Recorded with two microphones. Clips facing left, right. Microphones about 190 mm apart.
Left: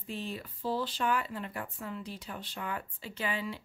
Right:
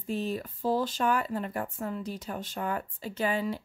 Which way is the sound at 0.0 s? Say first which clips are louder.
Right 7 dB; 45° right (ahead or behind).